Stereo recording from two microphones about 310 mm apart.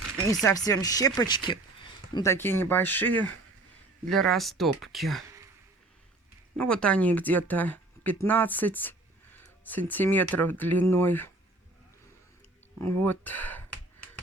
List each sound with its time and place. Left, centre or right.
0.3 s speech: centre
6.6 s speech: centre
13.0 s speech: centre